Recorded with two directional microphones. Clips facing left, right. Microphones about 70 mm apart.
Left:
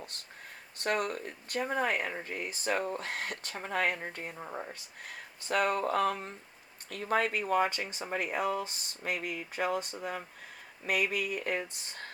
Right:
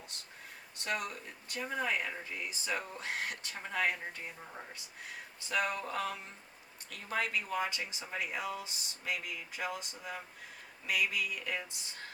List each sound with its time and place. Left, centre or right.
0.8 s speech: left